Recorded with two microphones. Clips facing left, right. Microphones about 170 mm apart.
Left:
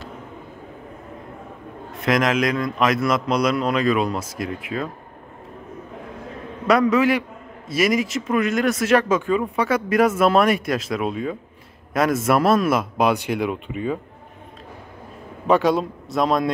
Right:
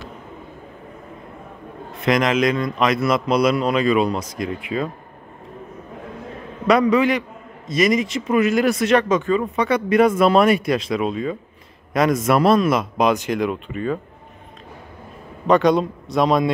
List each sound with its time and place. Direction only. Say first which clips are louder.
2.0 s a man's voice: right 2 dB; centre (ahead or behind)
6.7 s a man's voice: right 1 dB; centre (ahead or behind)
15.4 s a man's voice: right 2 dB; 5° left (ahead or behind)